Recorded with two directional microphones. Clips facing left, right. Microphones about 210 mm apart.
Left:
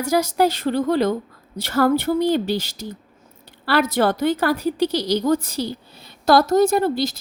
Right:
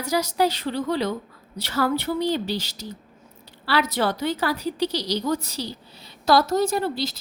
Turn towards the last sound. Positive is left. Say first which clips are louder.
# left 6 dB
turn(degrees=50)  # may be behind; listen again after turning